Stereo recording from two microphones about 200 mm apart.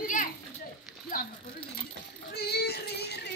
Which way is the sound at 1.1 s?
45° left (ahead or behind).